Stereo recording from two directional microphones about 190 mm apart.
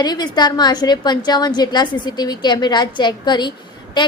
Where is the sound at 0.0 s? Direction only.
20° left (ahead or behind).